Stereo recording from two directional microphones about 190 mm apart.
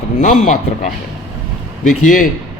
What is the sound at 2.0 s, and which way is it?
Speech, 50° left (ahead or behind).